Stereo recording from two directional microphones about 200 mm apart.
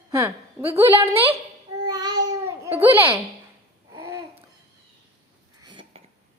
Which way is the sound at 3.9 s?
15° right (ahead or behind).